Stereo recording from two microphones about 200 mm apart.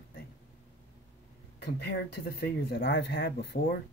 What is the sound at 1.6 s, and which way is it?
Speech, 55° left (ahead or behind).